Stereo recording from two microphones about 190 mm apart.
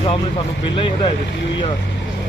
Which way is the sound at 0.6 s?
25° left (ahead or behind).